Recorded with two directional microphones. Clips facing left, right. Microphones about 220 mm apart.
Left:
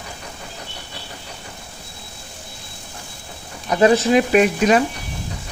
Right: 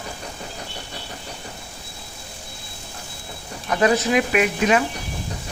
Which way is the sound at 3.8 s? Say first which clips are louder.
Left 4 dB; 30° left (ahead or behind).